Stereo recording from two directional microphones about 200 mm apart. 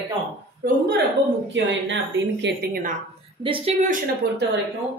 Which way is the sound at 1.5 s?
65° right (ahead or behind).